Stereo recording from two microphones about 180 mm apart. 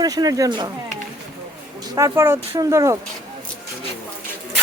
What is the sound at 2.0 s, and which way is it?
Speech, 15° right (ahead or behind).